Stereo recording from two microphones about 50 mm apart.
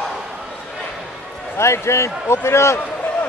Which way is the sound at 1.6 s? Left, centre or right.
Left.